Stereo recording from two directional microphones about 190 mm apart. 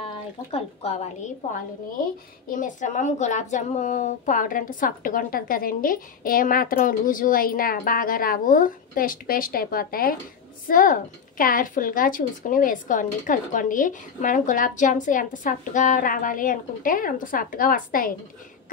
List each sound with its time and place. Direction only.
0.0 s speech: 30° left (ahead or behind)
2.5 s a woman's voice: 40° left (ahead or behind)